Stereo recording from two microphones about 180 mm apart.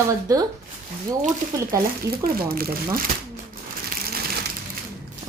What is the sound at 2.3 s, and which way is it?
Speech, 55° right (ahead or behind).